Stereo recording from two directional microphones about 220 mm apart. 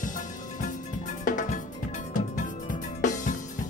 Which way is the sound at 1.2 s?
35° left (ahead or behind).